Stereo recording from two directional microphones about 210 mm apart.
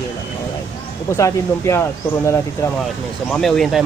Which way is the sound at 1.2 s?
15° left (ahead or behind).